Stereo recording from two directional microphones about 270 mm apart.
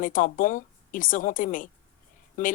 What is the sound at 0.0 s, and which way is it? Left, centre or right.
Speech, left.